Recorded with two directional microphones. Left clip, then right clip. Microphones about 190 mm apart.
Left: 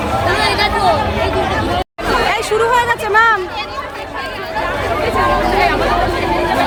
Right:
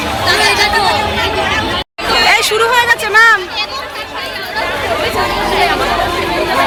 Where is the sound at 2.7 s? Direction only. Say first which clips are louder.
Right 3 dB; 15° left (ahead or behind).